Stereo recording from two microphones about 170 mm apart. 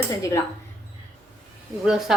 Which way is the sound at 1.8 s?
5° right (ahead or behind).